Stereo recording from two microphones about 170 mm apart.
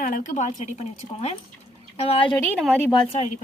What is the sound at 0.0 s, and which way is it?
A woman's voice, 50° left (ahead or behind).